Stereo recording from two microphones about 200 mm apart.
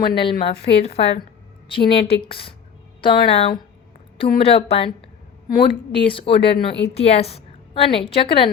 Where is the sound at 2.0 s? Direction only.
25° left (ahead or behind).